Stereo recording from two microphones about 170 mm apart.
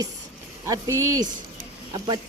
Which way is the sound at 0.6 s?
15° right (ahead or behind).